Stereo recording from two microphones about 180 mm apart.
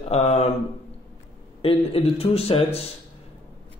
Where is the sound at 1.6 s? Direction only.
30° left (ahead or behind).